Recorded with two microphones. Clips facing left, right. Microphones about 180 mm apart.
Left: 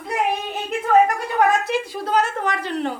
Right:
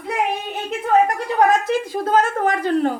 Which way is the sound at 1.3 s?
45° right (ahead or behind).